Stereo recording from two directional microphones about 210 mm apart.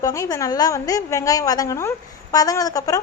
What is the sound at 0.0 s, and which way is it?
A woman's voice, 15° left (ahead or behind).